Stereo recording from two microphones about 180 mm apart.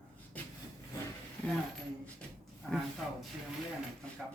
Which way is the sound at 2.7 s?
Centre (ahead or behind).